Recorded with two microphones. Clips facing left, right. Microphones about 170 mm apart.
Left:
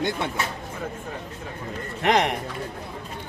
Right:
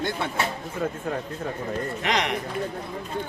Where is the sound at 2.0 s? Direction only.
50° left (ahead or behind).